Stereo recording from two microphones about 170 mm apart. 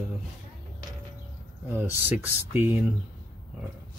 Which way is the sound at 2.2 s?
10° right (ahead or behind).